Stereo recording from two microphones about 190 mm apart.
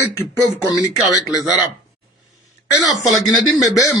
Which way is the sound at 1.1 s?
20° left (ahead or behind).